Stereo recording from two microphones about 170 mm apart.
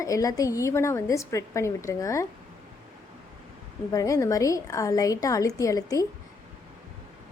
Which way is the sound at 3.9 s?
20° left (ahead or behind).